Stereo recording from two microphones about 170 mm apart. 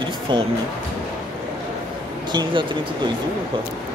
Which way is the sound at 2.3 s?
30° right (ahead or behind).